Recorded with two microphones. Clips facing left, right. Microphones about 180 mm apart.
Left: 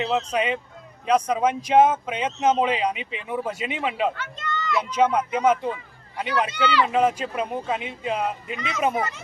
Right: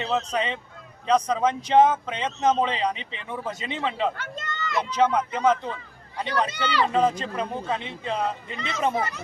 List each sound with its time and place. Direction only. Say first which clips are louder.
0.0 s speech: left 2 dB; 10° left (ahead or behind)
4.2 s a sound: left 2 dB; 45° right (ahead or behind)
4.8 s speech: even; 10° left (ahead or behind)
6.5 s speech: left 3 dB; 40° right (ahead or behind)
6.8 s speech: left 1 dB; 10° left (ahead or behind)